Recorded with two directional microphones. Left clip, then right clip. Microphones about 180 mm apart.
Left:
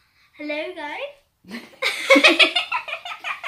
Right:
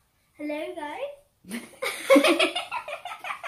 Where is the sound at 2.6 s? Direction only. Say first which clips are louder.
Left 6 dB; centre (ahead or behind).